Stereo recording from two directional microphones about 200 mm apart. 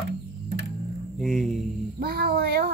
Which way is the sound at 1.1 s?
Centre (ahead or behind).